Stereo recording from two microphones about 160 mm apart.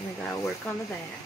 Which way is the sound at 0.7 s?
10° left (ahead or behind).